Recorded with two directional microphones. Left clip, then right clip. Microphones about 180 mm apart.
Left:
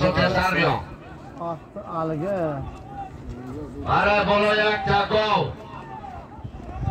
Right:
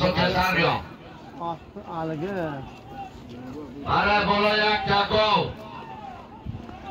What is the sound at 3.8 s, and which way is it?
A man's voice, 25° right (ahead or behind).